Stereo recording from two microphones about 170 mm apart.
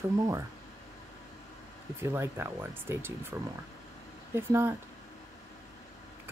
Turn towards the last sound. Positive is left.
turn(degrees=-15)  # may be behind; listen again after turning